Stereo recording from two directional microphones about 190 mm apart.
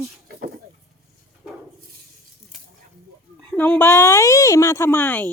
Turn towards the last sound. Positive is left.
turn(degrees=10)  # may be behind; listen again after turning